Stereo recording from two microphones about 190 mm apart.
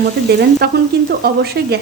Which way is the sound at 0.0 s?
55° right (ahead or behind).